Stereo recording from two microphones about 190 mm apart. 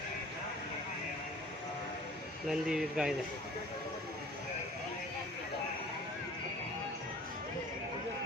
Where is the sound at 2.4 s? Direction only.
5° right (ahead or behind).